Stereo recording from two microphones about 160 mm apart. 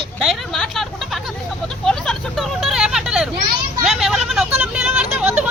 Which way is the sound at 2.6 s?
Centre (ahead or behind).